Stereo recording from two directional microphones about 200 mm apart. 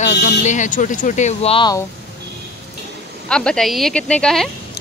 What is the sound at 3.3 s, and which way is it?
Speech, 5° left (ahead or behind).